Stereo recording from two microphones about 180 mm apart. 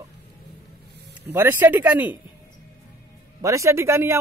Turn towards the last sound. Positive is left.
turn(degrees=-15)  # may be behind; listen again after turning